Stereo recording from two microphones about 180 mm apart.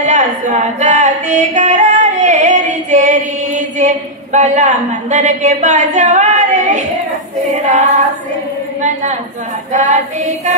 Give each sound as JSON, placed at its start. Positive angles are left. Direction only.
{"t": 0.0, "sound": "music", "side_deg": -40}
{"t": 7.5, "sound": "female singing", "side_deg": -40}
{"t": 9.7, "sound": "female singing", "side_deg": -40}